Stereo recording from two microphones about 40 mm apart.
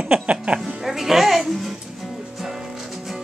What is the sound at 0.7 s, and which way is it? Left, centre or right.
Music, centre.